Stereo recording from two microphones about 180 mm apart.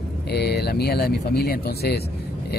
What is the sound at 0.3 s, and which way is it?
Speech, 65° left (ahead or behind).